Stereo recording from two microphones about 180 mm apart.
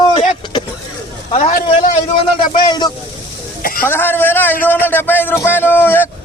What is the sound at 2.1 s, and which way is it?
Speech, 25° left (ahead or behind).